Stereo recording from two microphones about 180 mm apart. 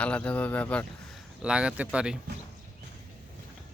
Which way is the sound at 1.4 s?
5° right (ahead or behind).